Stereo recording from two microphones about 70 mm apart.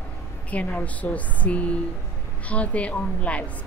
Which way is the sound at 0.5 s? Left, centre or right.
Centre.